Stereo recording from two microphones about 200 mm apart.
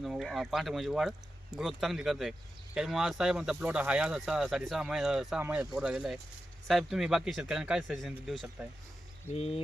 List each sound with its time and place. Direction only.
0.0 s speech: centre (ahead or behind)
9.3 s speech: 30° left (ahead or behind)